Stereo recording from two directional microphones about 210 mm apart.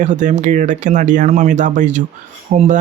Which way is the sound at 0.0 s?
35° right (ahead or behind).